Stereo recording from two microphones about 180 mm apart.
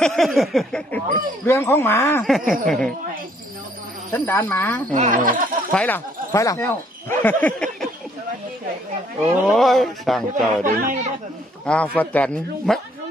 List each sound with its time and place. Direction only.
0.0 s a sound: centre (ahead or behind)
1.4 s speech: 15° left (ahead or behind)
2.2 s speech: centre (ahead or behind)
4.1 s speech: 10° left (ahead or behind)
4.9 s speech: 40° right (ahead or behind)
5.7 s speech: 10° left (ahead or behind)
9.5 s speech: centre (ahead or behind)
10.6 s speech: 45° right (ahead or behind)
11.6 s speech: 10° left (ahead or behind)